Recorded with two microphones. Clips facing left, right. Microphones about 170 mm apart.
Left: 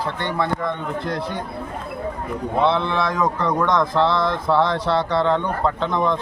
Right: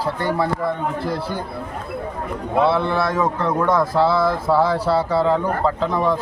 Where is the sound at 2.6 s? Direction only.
5° right (ahead or behind).